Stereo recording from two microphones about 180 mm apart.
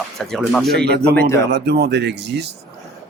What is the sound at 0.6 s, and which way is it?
Speech, 65° right (ahead or behind).